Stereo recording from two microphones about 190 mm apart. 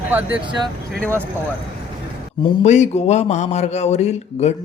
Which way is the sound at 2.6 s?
35° left (ahead or behind).